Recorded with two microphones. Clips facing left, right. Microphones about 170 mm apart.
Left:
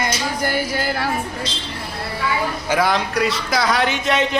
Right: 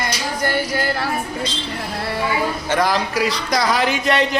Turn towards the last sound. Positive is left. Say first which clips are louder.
# right 1 dB
turn(degrees=0)  # may be behind; listen again after turning